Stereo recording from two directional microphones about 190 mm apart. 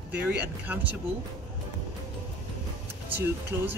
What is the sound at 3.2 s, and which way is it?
Speech, 10° right (ahead or behind).